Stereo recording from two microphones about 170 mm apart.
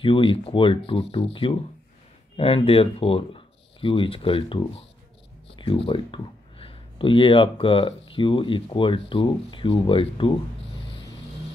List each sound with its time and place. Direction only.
0.0 s speech: 30° left (ahead or behind)